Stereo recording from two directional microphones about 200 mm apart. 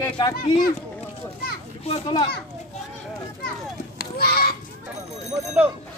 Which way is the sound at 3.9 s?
50° left (ahead or behind).